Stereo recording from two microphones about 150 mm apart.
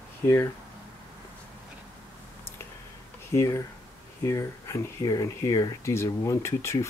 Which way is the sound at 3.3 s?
20° left (ahead or behind).